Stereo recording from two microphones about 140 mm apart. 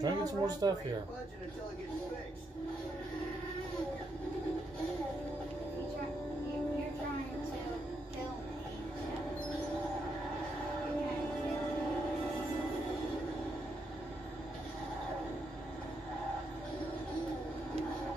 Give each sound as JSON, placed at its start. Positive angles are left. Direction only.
{"t": 0.0, "sound": "speech", "side_deg": -30}